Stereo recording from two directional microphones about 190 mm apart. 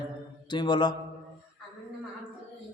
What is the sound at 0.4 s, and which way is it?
Mantra, 25° left (ahead or behind).